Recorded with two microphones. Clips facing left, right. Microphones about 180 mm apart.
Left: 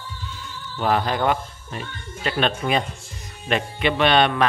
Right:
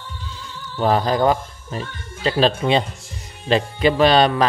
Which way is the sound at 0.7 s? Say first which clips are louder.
Right 4 dB; 35° right (ahead or behind).